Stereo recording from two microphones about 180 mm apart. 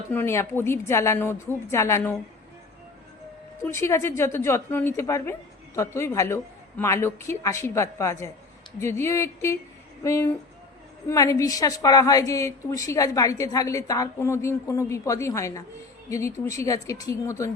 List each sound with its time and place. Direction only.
0.1 s a woman's voice: 15° left (ahead or behind)
3.6 s a woman's voice: 15° left (ahead or behind)